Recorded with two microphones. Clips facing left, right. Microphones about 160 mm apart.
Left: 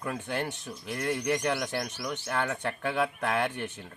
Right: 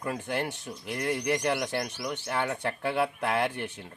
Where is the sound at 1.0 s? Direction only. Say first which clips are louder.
Right 1 dB; centre (ahead or behind).